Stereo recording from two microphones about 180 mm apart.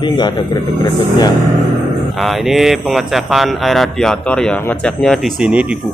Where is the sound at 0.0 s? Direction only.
25° left (ahead or behind).